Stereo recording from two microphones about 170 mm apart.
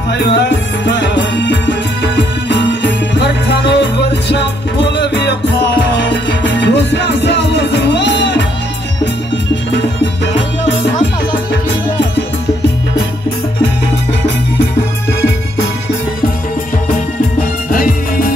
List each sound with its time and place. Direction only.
0.1 s music: 80° left
6.4 s music: 90° left
17.6 s music: 55° left (ahead or behind)